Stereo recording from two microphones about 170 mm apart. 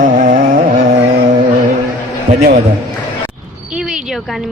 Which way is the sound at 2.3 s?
60° right (ahead or behind).